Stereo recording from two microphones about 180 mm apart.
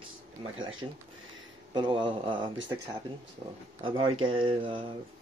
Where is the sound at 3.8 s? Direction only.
30° right (ahead or behind).